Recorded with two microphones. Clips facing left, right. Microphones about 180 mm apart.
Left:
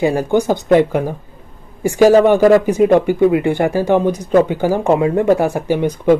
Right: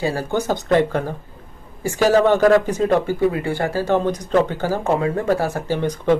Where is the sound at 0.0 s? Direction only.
20° left (ahead or behind).